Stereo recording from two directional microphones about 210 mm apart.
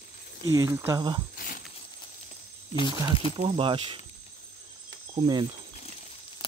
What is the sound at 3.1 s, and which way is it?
Speech, 25° left (ahead or behind).